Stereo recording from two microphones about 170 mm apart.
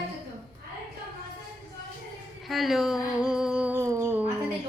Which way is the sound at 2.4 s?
Centre (ahead or behind).